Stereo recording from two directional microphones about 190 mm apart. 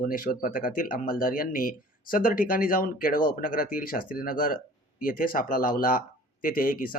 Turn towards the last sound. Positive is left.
turn(degrees=45)  # may be behind; listen again after turning